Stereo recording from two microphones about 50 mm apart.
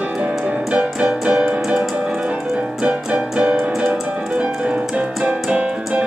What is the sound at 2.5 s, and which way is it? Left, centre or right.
Keyboard, right.